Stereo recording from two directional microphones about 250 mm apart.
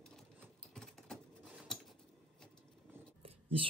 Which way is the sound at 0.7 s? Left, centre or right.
Centre.